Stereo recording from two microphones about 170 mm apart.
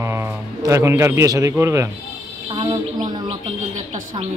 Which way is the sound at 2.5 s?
30° right (ahead or behind).